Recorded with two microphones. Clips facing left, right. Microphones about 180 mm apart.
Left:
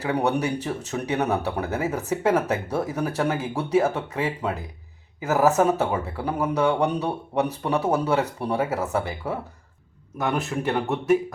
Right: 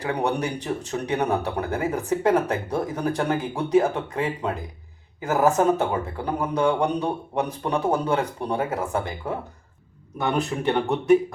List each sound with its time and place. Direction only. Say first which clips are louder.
0.0 s speech: left 1 dB; 5° left (ahead or behind)